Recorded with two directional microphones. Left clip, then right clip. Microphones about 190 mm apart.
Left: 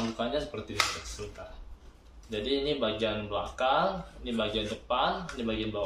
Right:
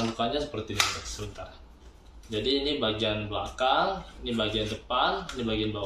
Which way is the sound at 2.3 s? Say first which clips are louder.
Right 2 dB; 15° left (ahead or behind).